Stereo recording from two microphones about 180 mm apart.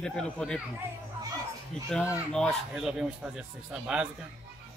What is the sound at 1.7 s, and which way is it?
A man's voice, 5° left (ahead or behind).